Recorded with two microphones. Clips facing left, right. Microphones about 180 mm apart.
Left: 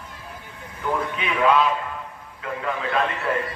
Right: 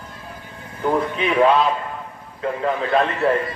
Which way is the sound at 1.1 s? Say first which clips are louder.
Right 3 dB; 35° right (ahead or behind).